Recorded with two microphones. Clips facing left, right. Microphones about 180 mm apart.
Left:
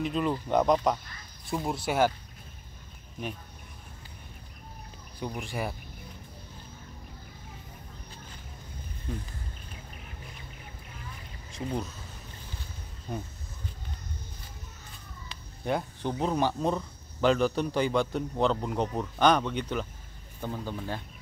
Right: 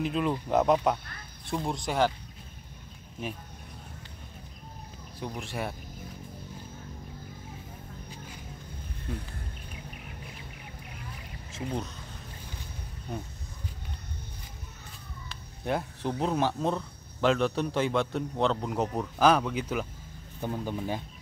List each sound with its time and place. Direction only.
0.0 s speech: centre (ahead or behind)
5.2 s speech: centre (ahead or behind)
11.5 s speech: centre (ahead or behind)
15.2 s speech: centre (ahead or behind)